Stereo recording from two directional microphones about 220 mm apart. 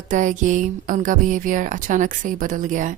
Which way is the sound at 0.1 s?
35° right (ahead or behind).